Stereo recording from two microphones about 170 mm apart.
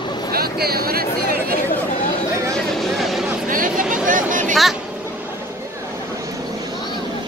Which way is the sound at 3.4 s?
50° right (ahead or behind).